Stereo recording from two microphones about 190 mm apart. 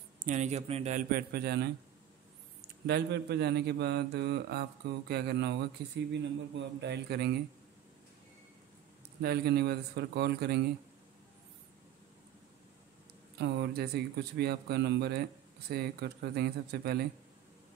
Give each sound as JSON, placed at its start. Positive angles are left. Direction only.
{"t": 0.2, "sound": "a man's voice", "side_deg": -40}
{"t": 2.9, "sound": "a man's voice", "side_deg": -60}
{"t": 9.2, "sound": "a man's voice", "side_deg": -55}
{"t": 13.4, "sound": "a man's voice", "side_deg": -60}